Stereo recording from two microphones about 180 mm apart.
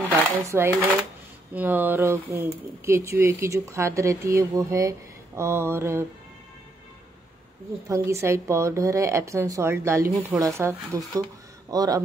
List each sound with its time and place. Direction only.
0.1 s a sound: 15° right (ahead or behind)
1.5 s speech: 10° right (ahead or behind)
7.9 s a man's voice: 15° right (ahead or behind)